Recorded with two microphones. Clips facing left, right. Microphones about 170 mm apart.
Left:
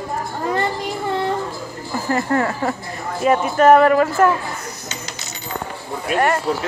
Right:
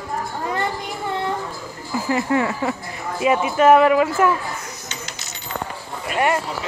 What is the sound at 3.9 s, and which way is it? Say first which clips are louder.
Speech: left 2 dB; 10° right (ahead or behind).